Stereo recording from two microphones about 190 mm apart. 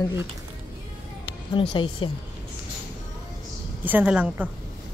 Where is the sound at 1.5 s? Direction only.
25° left (ahead or behind).